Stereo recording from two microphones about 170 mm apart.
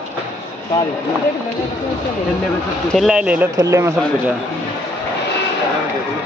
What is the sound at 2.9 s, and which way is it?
Speech, 5° right (ahead or behind).